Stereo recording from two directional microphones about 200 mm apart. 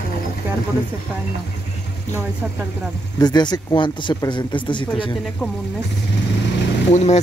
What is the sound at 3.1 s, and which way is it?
Speech, 20° left (ahead or behind).